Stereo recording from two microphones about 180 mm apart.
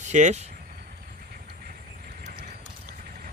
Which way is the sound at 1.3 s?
55° right (ahead or behind).